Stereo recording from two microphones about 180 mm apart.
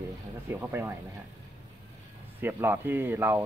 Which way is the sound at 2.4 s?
10° right (ahead or behind).